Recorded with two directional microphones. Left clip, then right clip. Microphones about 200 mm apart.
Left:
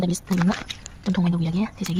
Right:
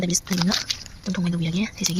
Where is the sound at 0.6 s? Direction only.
20° left (ahead or behind).